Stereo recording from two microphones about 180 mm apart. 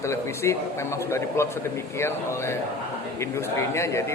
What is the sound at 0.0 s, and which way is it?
A man's voice, 15° left (ahead or behind).